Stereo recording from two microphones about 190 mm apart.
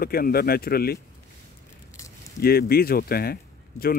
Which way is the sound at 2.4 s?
55° left (ahead or behind).